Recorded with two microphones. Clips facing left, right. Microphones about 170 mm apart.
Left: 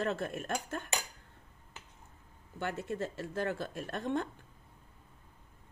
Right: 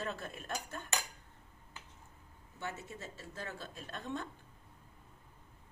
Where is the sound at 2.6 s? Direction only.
60° left (ahead or behind).